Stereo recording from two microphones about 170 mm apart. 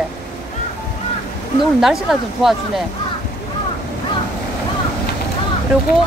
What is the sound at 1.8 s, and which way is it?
Speech, centre (ahead or behind).